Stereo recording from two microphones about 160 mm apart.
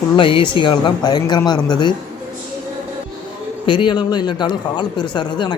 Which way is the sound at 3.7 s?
30° left (ahead or behind).